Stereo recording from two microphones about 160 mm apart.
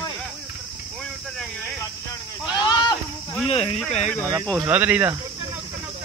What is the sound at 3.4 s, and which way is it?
Speech, 35° left (ahead or behind).